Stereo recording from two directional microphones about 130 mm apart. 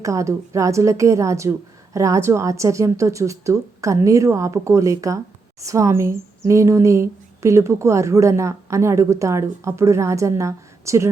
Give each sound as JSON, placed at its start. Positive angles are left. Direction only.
{"t": 0.0, "sound": "a woman's voice", "side_deg": -25}